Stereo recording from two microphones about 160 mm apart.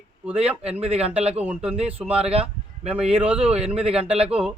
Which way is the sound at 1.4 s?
5° right (ahead or behind).